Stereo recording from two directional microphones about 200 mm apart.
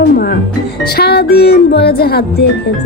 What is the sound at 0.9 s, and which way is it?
Music, 55° left (ahead or behind).